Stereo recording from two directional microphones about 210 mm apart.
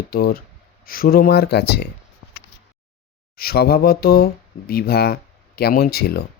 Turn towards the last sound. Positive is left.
turn(degrees=50)  # may be behind; listen again after turning